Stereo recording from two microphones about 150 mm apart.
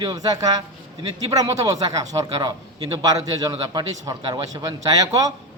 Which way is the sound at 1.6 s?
25° right (ahead or behind).